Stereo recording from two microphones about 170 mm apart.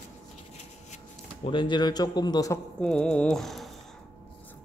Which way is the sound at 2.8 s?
5° left (ahead or behind).